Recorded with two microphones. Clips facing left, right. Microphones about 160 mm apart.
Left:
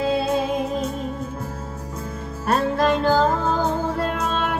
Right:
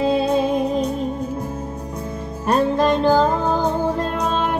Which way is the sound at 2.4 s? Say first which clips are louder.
Right 3 dB; 15° right (ahead or behind).